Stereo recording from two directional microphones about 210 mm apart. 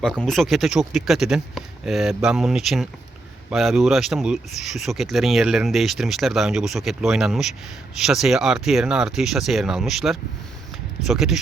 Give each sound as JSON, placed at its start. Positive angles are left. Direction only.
{"t": 0.0, "sound": "speech", "side_deg": 0}